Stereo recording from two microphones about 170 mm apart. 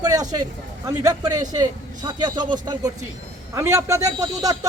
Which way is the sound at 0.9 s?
20° right (ahead or behind).